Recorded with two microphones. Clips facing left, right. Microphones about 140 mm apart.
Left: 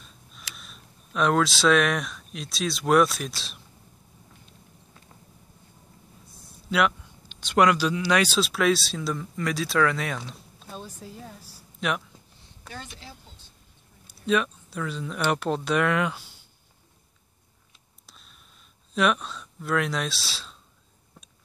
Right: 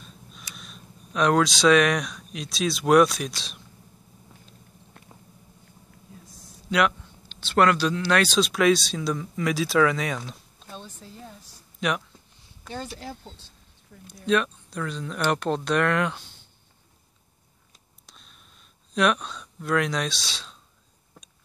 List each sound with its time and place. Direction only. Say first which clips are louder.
0.6 s speech: right 4 dB; centre (ahead or behind)
6.7 s speech: right 1 dB; 5° left (ahead or behind)
12.6 s speech: right 6 dB; 35° right (ahead or behind)
14.0 s speech: right 1 dB; 5° left (ahead or behind)
18.0 s a sound: right 1 dB; centre (ahead or behind)
18.9 s speech: right 1 dB; centre (ahead or behind)